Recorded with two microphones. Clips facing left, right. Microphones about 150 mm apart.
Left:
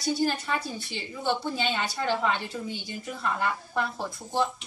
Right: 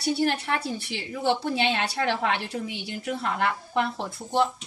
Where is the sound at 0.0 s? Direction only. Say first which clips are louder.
Right 2 dB; 70° right (ahead or behind).